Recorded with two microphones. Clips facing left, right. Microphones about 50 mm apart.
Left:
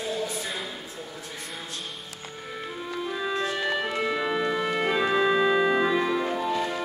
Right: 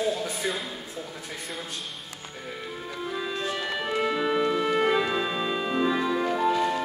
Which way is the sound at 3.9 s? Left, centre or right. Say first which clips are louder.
Right 1 dB; centre.